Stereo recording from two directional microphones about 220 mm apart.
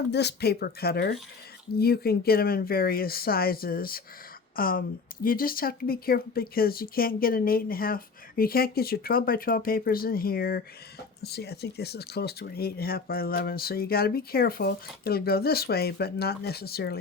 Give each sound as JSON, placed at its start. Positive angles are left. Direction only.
{"t": 0.1, "sound": "speech", "side_deg": 50}